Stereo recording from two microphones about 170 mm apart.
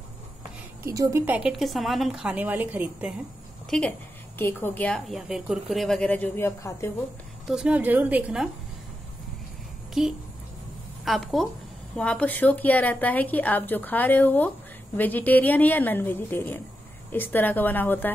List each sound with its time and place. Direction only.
0.8 s a woman's voice: 20° right (ahead or behind)
1.6 s a woman's voice: centre (ahead or behind)
3.7 s a woman's voice: 5° left (ahead or behind)
7.4 s a woman's voice: 5° right (ahead or behind)
10.0 s a woman's voice: centre (ahead or behind)